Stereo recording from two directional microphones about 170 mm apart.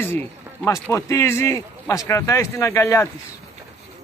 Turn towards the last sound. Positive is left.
turn(degrees=15)  # may be behind; listen again after turning